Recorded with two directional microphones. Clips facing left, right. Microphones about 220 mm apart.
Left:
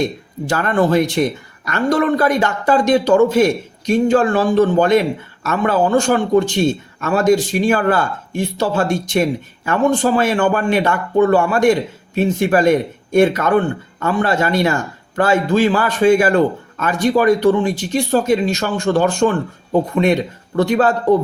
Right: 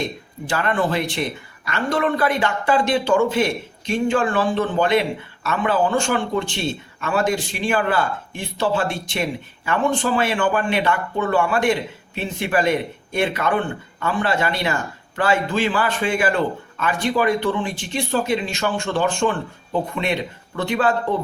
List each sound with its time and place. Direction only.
0.4 s speech: 45° left (ahead or behind)
20.6 s speech: 40° left (ahead or behind)